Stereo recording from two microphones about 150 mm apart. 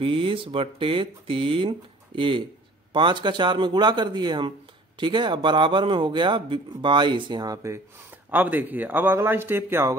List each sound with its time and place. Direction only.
0.0 s speech: 35° right (ahead or behind)
8.3 s speech: 10° right (ahead or behind)